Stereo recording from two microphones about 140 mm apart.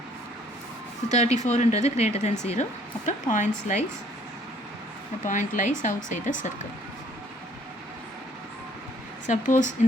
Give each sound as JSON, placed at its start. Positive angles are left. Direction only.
{"t": 1.1, "sound": "speech", "side_deg": 55}
{"t": 5.2, "sound": "speech", "side_deg": 65}
{"t": 9.2, "sound": "speech", "side_deg": 60}